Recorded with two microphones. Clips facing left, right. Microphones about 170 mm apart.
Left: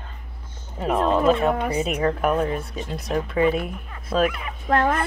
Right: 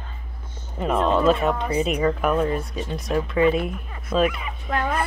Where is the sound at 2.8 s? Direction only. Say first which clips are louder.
Even; 15° left (ahead or behind).